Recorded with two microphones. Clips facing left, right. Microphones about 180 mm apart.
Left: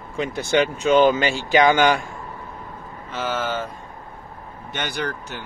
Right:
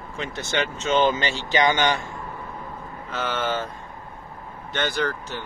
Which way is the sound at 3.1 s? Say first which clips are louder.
Left 1 dB; 5° left (ahead or behind).